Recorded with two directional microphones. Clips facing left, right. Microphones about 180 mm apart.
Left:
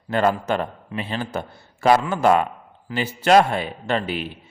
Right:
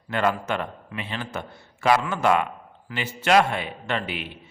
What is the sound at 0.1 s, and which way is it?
A man's voice, 35° left (ahead or behind).